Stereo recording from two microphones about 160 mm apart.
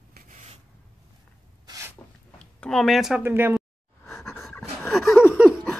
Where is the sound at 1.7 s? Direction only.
15° right (ahead or behind).